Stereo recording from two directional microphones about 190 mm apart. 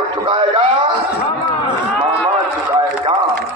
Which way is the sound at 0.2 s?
25° right (ahead or behind).